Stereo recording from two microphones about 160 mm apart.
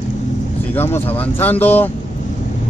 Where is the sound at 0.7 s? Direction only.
15° left (ahead or behind).